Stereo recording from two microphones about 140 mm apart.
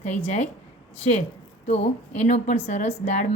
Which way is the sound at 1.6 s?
50° left (ahead or behind).